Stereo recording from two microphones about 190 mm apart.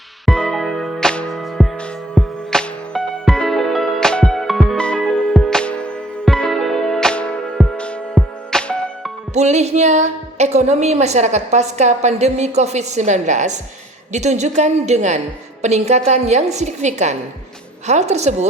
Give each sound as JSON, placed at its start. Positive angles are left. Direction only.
{"t": 0.3, "sound": "music", "side_deg": 5}
{"t": 7.6, "sound": "music", "side_deg": -5}
{"t": 9.3, "sound": "a woman's voice", "side_deg": -35}